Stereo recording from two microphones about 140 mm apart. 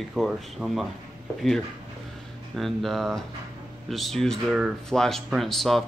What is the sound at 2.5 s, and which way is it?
Speech, centre (ahead or behind).